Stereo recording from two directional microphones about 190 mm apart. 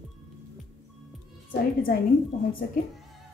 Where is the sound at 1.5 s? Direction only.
50° left (ahead or behind).